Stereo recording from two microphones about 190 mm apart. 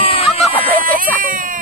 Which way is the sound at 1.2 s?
45° right (ahead or behind).